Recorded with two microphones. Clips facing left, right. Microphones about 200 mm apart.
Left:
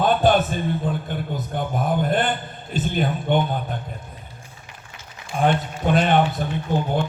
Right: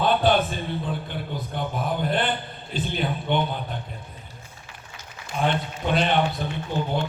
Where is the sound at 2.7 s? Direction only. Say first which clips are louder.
Left 4 dB; 45° left (ahead or behind).